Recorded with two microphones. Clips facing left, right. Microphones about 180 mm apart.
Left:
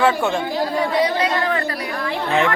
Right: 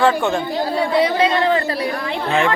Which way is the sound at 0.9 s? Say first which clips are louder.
Right 5 dB; 25° right (ahead or behind).